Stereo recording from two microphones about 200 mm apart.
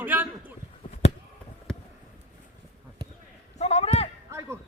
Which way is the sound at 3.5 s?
30° left (ahead or behind).